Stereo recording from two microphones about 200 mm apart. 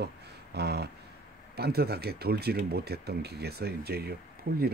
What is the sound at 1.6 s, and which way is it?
Speech, 50° right (ahead or behind).